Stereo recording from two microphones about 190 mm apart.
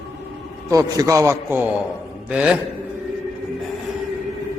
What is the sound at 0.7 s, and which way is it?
A man's voice, 15° right (ahead or behind).